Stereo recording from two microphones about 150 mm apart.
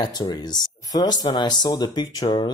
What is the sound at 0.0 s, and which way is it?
Speech, 25° left (ahead or behind).